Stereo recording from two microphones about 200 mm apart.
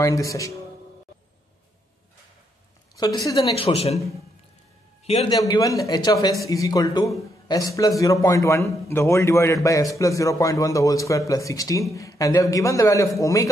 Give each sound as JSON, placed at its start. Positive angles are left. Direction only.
{"t": 0.0, "sound": "a man's voice", "side_deg": 15}
{"t": 3.3, "sound": "a man's voice", "side_deg": 30}
{"t": 5.0, "sound": "a man's voice", "side_deg": 30}
{"t": 5.3, "sound": "a man's voice", "side_deg": 20}